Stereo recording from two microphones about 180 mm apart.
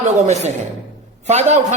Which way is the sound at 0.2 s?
40° right (ahead or behind).